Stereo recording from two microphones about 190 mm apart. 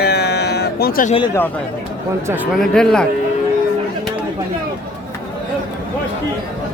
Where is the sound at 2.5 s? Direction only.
Centre (ahead or behind).